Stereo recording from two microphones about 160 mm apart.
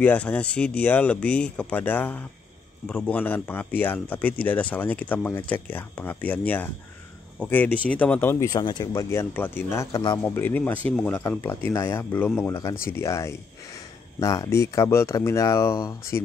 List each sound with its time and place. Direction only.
0.0 s speech: 10° left (ahead or behind); by 9.0 s 25° left (ahead or behind)
9.1 s speech: 15° left (ahead or behind)